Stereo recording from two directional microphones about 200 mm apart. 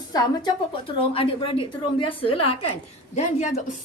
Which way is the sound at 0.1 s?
20° left (ahead or behind).